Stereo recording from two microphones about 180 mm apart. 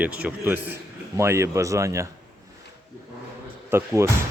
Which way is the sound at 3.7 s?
15° right (ahead or behind).